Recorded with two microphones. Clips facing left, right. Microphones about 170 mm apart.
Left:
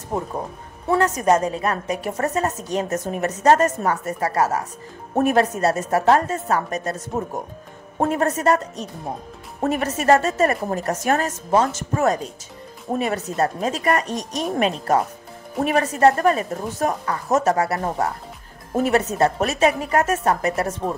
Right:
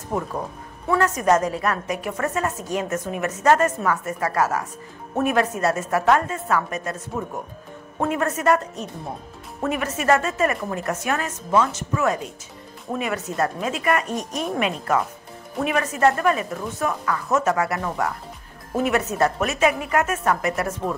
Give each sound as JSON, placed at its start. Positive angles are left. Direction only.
{"t": 1.1, "sound": "a woman's voice", "side_deg": 30}